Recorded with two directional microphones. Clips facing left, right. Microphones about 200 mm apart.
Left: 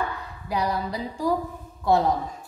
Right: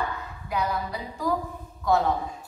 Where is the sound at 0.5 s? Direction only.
35° left (ahead or behind).